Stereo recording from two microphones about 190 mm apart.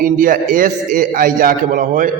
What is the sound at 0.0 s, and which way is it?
A man's voice, 45° right (ahead or behind).